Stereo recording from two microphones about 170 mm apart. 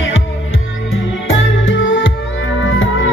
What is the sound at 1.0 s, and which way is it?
Music, 90° left.